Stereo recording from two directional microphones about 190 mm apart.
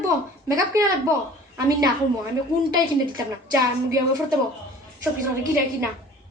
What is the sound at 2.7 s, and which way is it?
A woman's voice, 20° right (ahead or behind).